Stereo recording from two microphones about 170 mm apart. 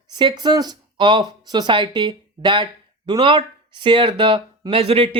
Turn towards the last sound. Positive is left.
turn(degrees=-35)  # may be behind; listen again after turning